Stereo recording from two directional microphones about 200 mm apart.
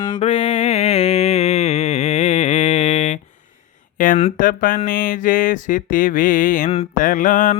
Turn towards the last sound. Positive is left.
turn(degrees=40)  # may be behind; listen again after turning